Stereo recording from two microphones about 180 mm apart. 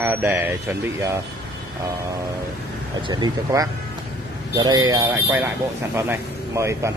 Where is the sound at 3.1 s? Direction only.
20° right (ahead or behind).